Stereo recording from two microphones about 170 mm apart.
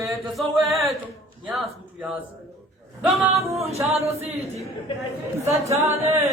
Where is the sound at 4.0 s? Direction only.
15° right (ahead or behind).